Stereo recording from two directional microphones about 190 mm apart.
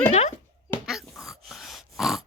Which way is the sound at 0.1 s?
35° left (ahead or behind).